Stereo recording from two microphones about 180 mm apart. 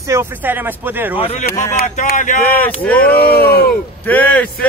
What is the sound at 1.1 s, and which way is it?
Speech, 35° left (ahead or behind).